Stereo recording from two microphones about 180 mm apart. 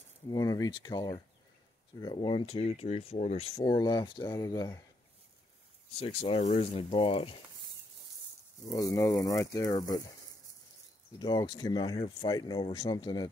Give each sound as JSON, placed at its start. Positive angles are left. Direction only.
{"t": 0.3, "sound": "speech", "side_deg": 20}
{"t": 5.9, "sound": "speech", "side_deg": 30}
{"t": 8.6, "sound": "speech", "side_deg": 20}
{"t": 11.1, "sound": "speech", "side_deg": 25}